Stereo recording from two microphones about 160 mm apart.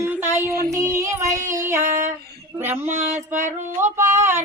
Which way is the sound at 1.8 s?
50° right (ahead or behind).